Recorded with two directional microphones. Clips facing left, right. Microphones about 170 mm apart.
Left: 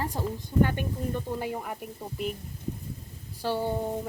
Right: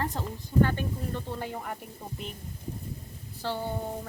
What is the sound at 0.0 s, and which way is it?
A woman's voice, 10° left (ahead or behind).